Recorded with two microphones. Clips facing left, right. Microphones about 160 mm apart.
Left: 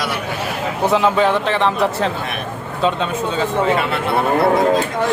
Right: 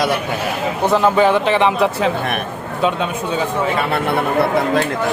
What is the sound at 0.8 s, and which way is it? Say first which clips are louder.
Speech: right 1 dB; centre (ahead or behind).